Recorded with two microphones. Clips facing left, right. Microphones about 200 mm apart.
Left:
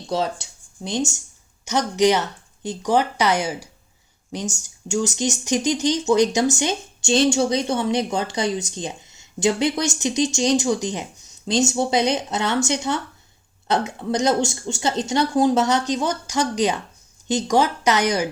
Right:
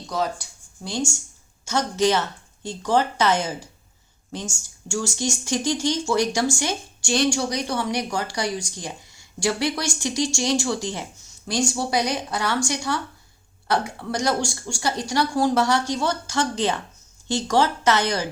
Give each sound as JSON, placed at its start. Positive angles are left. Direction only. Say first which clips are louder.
{"t": 0.1, "sound": "speech", "louder": "left 3 dB", "side_deg": 25}